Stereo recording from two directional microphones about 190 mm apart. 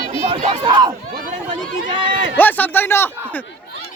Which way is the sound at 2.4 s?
10° left (ahead or behind).